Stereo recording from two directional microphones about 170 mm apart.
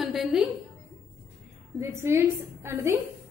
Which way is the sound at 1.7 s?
15° right (ahead or behind).